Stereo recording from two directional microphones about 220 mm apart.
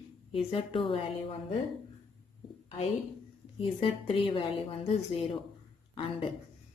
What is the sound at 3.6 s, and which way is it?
A woman's voice, 25° left (ahead or behind).